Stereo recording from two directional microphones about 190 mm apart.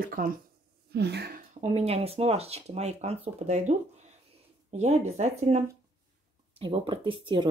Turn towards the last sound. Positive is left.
turn(degrees=-25)  # may be behind; listen again after turning